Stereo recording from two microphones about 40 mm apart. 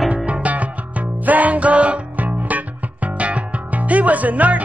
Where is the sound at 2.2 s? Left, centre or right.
Right.